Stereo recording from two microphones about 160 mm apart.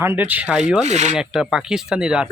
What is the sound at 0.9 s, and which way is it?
Speech, 45° right (ahead or behind).